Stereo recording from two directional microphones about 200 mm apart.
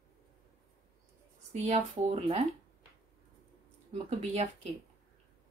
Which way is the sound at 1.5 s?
35° right (ahead or behind).